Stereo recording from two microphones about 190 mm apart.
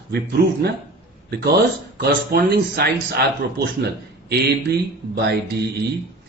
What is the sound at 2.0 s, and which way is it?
Speech, 55° right (ahead or behind).